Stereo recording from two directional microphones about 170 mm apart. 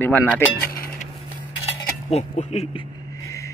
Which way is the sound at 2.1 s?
40° left (ahead or behind).